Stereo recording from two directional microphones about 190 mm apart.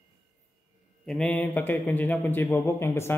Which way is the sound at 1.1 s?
5° left (ahead or behind).